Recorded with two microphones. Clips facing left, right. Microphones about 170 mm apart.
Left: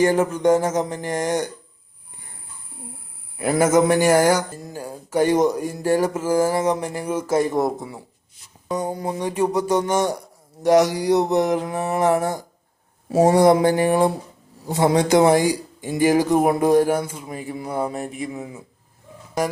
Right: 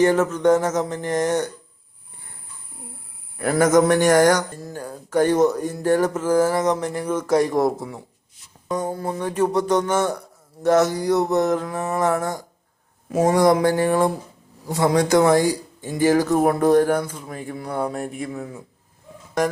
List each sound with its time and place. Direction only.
0.0 s speech: 10° left (ahead or behind)
3.3 s speech: 10° left (ahead or behind)
8.6 s a sound: centre (ahead or behind)
8.9 s speech: 15° left (ahead or behind)
10.6 s mantra: 15° left (ahead or behind)
13.1 s mantra: 30° left (ahead or behind)
15.1 s speech: 20° left (ahead or behind)